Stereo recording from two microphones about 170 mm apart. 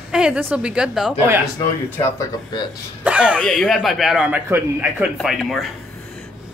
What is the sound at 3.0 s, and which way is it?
A man's voice, 5° right (ahead or behind).